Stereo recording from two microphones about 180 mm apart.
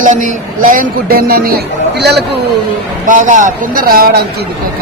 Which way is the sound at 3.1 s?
45° right (ahead or behind).